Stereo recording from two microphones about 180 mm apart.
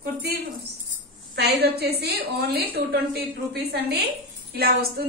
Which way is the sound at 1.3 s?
65° right (ahead or behind).